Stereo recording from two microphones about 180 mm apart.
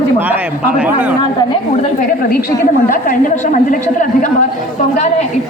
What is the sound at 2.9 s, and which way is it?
Speech, 45° left (ahead or behind).